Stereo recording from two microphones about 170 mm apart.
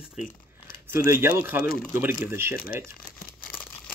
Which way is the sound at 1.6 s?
60° left (ahead or behind).